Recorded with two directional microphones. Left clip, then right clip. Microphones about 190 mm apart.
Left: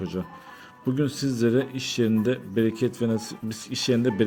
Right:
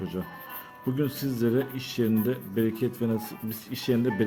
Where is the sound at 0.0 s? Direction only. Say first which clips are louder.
Left 2 dB; 20° left (ahead or behind).